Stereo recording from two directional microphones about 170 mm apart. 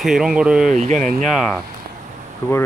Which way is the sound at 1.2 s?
Centre (ahead or behind).